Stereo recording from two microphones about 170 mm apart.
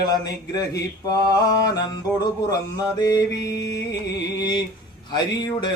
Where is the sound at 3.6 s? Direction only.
90° left.